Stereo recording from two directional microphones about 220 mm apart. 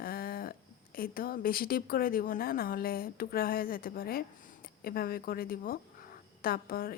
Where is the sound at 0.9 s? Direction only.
40° left (ahead or behind).